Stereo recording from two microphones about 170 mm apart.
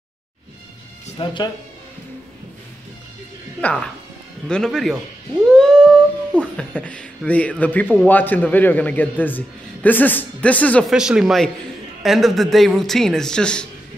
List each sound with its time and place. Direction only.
1.1 s speech: 25° left (ahead or behind)
3.6 s a man's voice: 5° left (ahead or behind)
5.5 s humming: 5° left (ahead or behind)
6.5 s a man's voice: 5° left (ahead or behind)
10.9 s a man's voice: 5° right (ahead or behind)